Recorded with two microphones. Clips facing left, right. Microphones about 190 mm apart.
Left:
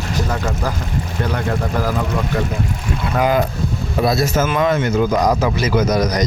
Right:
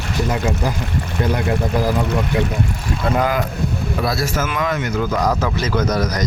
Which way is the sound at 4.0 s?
20° left (ahead or behind).